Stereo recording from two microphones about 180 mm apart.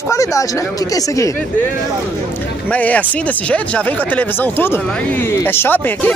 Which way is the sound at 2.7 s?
10° left (ahead or behind).